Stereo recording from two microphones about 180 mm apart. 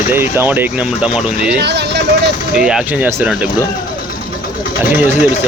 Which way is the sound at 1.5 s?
70° right (ahead or behind).